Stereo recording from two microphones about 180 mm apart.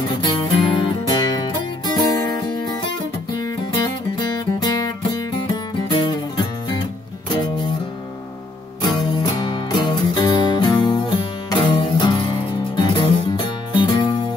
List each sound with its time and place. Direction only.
0.2 s music: 25° left (ahead or behind)
3.7 s music: 25° left (ahead or behind)
8.8 s music: 25° left (ahead or behind)